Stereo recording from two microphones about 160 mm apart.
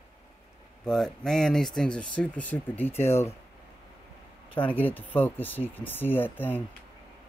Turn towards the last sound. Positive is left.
turn(degrees=10)  # may be behind; listen again after turning